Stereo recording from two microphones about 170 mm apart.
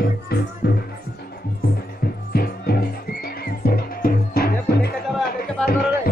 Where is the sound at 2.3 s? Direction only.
65° left (ahead or behind).